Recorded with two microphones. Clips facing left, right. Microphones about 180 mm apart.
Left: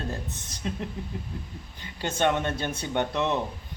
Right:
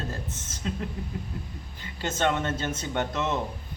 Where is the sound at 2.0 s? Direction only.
15° left (ahead or behind).